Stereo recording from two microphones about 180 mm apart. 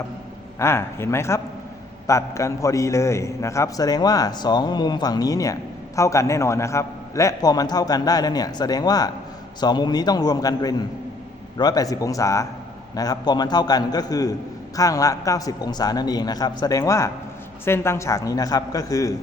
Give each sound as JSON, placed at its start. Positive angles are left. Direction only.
{"t": 0.6, "sound": "a man's voice", "side_deg": 15}